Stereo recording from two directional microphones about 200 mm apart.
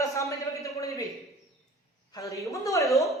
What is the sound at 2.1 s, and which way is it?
Speech, 15° left (ahead or behind).